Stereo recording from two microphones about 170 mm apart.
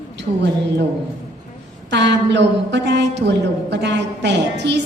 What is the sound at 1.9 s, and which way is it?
A woman's voice, 90° right.